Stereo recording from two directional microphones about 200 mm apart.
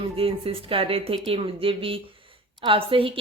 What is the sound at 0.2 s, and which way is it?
A woman's voice, 30° right (ahead or behind).